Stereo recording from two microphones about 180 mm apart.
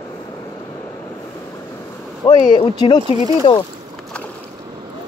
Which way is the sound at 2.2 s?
25° left (ahead or behind).